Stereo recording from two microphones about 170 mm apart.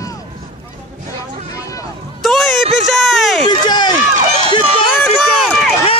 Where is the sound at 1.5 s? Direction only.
20° left (ahead or behind).